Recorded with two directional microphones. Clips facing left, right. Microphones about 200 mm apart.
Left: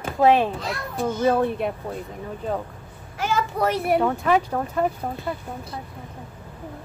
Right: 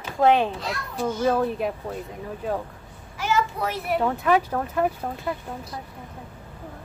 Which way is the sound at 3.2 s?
55° left (ahead or behind).